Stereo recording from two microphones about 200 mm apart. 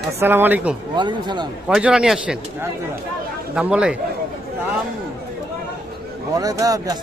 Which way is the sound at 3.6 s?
5° right (ahead or behind).